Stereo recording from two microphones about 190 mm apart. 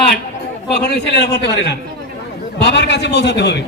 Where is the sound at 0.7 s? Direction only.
60° left (ahead or behind).